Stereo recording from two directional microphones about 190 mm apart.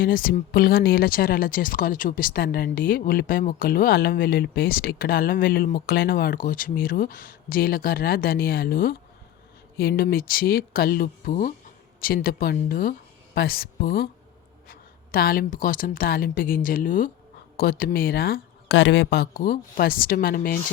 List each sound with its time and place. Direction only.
0.0 s speech: 50° left (ahead or behind)